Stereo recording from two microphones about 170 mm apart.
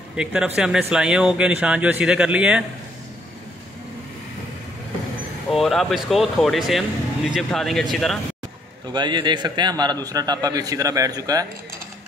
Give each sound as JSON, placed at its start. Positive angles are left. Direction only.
{"t": 0.1, "sound": "speech", "side_deg": -5}
{"t": 5.5, "sound": "speech", "side_deg": 0}
{"t": 8.9, "sound": "a man's voice", "side_deg": -25}